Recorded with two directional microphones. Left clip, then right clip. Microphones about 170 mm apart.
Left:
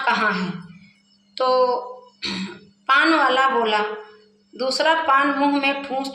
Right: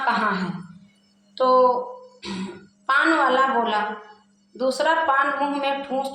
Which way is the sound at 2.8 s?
15° left (ahead or behind).